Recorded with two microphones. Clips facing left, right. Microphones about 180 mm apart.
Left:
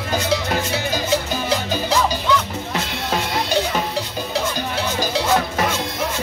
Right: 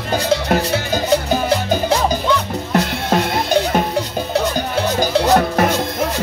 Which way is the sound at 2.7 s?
50° right (ahead or behind).